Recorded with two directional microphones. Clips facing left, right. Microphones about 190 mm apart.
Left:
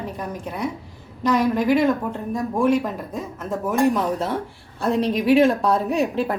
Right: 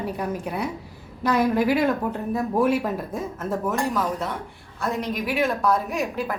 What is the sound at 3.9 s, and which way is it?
A woman's voice, 25° left (ahead or behind).